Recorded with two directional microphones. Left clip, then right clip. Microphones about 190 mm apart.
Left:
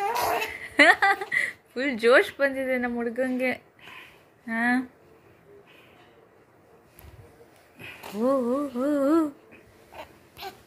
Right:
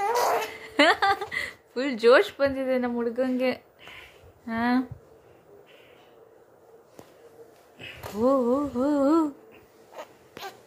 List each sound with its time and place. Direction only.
0.0 s speech: 25° right (ahead or behind)
8.2 s speech: 10° right (ahead or behind)